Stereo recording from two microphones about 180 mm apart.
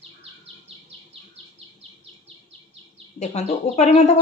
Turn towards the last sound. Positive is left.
turn(degrees=40)  # may be behind; listen again after turning